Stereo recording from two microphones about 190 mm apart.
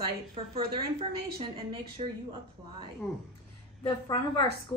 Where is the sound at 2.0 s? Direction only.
35° right (ahead or behind).